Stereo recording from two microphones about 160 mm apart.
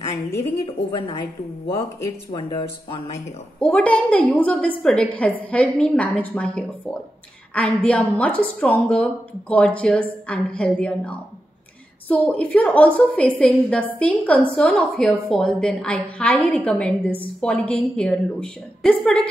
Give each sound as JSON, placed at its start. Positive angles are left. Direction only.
{"t": 0.9, "sound": "a woman's voice", "side_deg": 35}
{"t": 2.3, "sound": "speech", "side_deg": 30}
{"t": 3.5, "sound": "a woman's voice", "side_deg": 5}